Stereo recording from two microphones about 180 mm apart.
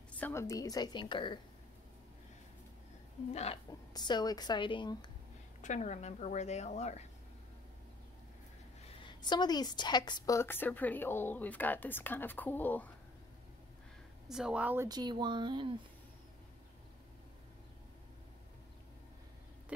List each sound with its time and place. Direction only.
0.1 s a woman's voice: 10° left (ahead or behind)
3.9 s a woman's voice: 25° left (ahead or behind)
5.6 s speech: 40° left (ahead or behind)
9.0 s a woman's voice: 25° left (ahead or behind)
14.2 s speech: 5° right (ahead or behind)
14.9 s speech: 25° right (ahead or behind)